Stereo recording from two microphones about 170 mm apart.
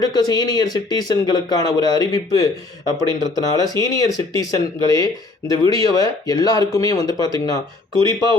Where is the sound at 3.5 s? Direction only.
20° left (ahead or behind).